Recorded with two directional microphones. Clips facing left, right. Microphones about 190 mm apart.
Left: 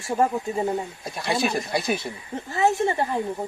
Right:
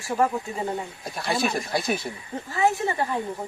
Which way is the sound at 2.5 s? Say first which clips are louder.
Left 2 dB; 25° left (ahead or behind).